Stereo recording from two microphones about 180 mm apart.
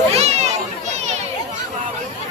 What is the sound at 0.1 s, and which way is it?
Children playing, 35° right (ahead or behind).